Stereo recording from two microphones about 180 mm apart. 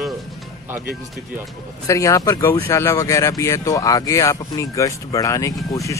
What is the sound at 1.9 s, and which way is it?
Speech, 20° left (ahead or behind).